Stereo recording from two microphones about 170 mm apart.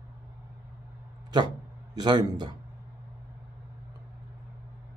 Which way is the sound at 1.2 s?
25° right (ahead or behind).